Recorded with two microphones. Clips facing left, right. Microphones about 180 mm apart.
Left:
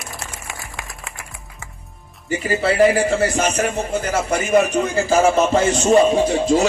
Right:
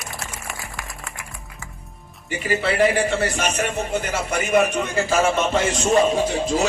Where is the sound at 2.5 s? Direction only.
35° left (ahead or behind).